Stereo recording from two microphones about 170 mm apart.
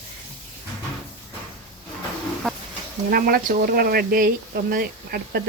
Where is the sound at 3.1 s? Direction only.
60° right (ahead or behind).